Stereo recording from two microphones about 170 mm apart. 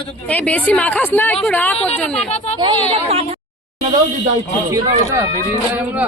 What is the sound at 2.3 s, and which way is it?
Speech, 40° left (ahead or behind).